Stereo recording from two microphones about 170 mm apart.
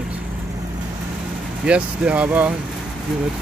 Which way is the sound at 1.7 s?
5° right (ahead or behind).